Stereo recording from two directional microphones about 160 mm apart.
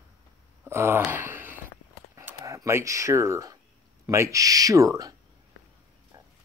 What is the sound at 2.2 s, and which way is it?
Speech, 20° right (ahead or behind).